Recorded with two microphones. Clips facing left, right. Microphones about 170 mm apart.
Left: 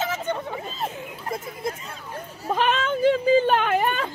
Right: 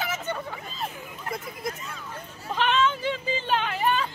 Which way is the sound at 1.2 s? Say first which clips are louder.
Left 3 dB; 25° left (ahead or behind).